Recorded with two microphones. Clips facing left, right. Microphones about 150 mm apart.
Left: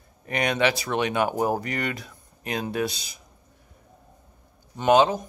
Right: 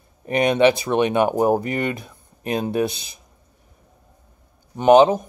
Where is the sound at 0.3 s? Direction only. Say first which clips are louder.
Right 7 dB; 25° right (ahead or behind).